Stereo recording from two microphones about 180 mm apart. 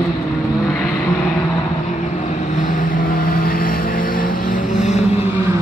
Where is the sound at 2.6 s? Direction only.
45° left (ahead or behind).